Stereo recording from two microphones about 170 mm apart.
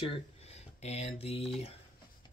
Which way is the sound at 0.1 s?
40° left (ahead or behind).